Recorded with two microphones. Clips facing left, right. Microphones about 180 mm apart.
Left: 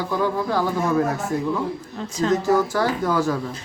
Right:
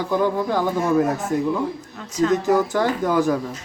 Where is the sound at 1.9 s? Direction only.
30° left (ahead or behind).